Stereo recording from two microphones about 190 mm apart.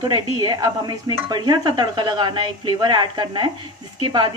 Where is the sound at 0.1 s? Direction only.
20° right (ahead or behind).